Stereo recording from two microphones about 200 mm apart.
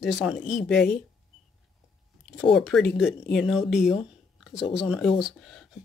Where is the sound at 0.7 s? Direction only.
55° left (ahead or behind).